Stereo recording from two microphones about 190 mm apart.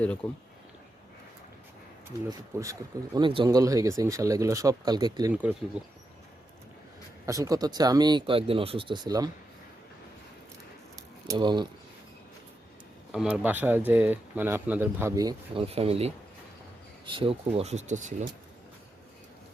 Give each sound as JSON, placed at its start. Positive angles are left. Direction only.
{"t": 0.2, "sound": "speech", "side_deg": 5}
{"t": 2.6, "sound": "speech", "side_deg": -20}
{"t": 5.3, "sound": "speech", "side_deg": -10}
{"t": 7.3, "sound": "speech", "side_deg": -15}
{"t": 11.3, "sound": "speech", "side_deg": -25}
{"t": 13.1, "sound": "speech", "side_deg": -5}
{"t": 15.6, "sound": "speech", "side_deg": -30}